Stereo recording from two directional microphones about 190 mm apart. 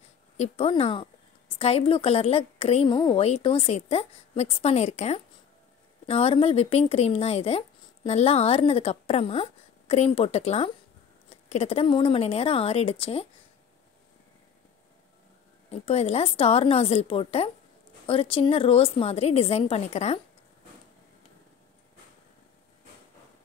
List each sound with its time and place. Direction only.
0.4 s speech: 30° left (ahead or behind)
15.7 s speech: 35° left (ahead or behind)